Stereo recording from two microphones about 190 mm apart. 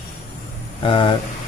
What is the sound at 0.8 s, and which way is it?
Speech, 25° left (ahead or behind).